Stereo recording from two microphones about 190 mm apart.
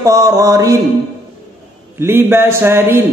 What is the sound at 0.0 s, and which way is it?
Speech, 15° right (ahead or behind).